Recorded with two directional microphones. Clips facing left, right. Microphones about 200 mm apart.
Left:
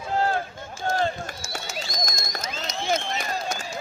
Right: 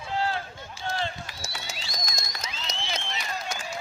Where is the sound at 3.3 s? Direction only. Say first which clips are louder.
Left 4 dB; 35° left (ahead or behind).